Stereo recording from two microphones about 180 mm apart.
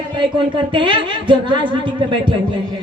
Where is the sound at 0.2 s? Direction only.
25° right (ahead or behind).